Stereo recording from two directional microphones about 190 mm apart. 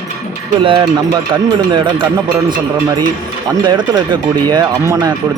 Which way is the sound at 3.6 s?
25° right (ahead or behind).